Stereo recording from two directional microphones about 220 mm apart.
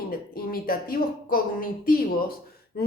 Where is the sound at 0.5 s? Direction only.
40° left (ahead or behind).